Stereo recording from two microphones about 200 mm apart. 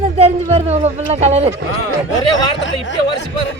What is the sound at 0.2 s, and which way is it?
Speech, 30° right (ahead or behind).